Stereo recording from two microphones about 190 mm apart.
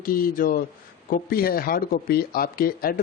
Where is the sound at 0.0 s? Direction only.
50° left (ahead or behind).